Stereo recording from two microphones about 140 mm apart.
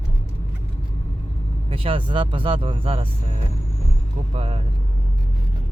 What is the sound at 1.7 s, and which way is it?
Speech, 40° right (ahead or behind).